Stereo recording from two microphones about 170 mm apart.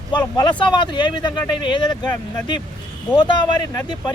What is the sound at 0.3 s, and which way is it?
Speech, 25° left (ahead or behind).